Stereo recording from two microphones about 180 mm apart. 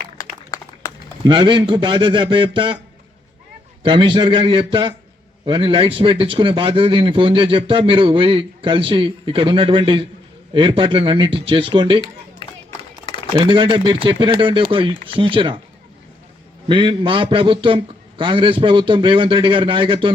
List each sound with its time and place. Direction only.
1.2 s a man's voice: 25° right (ahead or behind)
3.8 s a man's voice: 30° right (ahead or behind)
13.3 s a man's voice: 25° right (ahead or behind)
16.6 s a man's voice: 25° right (ahead or behind)